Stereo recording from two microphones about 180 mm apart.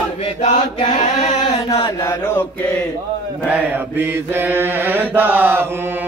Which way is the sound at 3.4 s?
10° right (ahead or behind).